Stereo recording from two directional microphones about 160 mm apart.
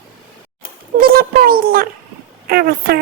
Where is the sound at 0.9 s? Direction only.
70° right (ahead or behind).